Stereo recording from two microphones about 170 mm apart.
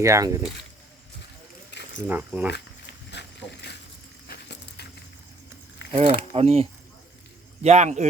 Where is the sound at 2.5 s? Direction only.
90° left.